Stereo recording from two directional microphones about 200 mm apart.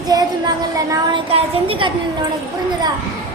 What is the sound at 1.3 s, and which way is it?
Speech, 30° right (ahead or behind).